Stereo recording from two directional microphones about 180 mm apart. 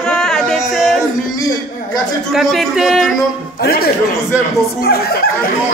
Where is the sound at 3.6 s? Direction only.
55° left (ahead or behind).